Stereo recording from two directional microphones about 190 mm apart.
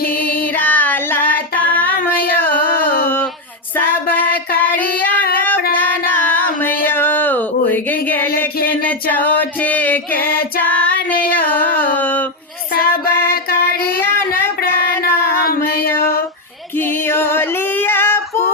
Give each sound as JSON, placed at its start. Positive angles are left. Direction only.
{"t": 0.5, "sound": "child singing", "side_deg": 10}
{"t": 2.6, "sound": "carnatic music", "side_deg": 50}
{"t": 3.8, "sound": "child singing", "side_deg": 10}
{"t": 5.7, "sound": "female singing", "side_deg": 10}
{"t": 8.4, "sound": "music", "side_deg": 10}
{"t": 10.6, "sound": "female singing", "side_deg": 5}
{"t": 11.3, "sound": "a sound", "side_deg": 10}
{"t": 12.7, "sound": "music", "side_deg": 55}
{"t": 14.0, "sound": "a sound", "side_deg": 10}
{"t": 15.0, "sound": "a sound", "side_deg": 55}
{"t": 16.7, "sound": "female singing", "side_deg": 10}